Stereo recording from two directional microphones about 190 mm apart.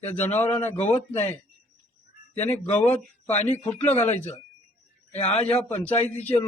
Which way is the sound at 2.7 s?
5° left (ahead or behind).